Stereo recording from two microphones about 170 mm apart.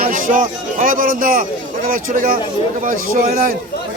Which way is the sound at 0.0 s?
55° right (ahead or behind).